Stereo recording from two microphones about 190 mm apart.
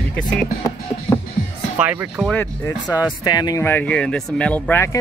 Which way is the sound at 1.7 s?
10° right (ahead or behind).